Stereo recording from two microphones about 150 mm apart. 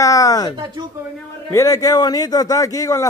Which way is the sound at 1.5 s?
20° left (ahead or behind).